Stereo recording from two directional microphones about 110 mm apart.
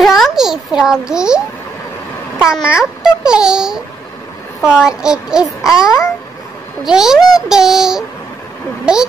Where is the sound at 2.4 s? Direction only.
5° right (ahead or behind).